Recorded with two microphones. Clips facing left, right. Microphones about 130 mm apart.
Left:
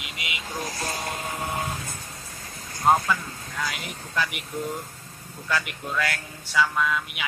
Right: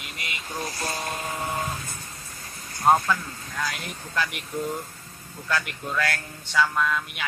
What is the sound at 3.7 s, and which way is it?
Speech, 5° left (ahead or behind).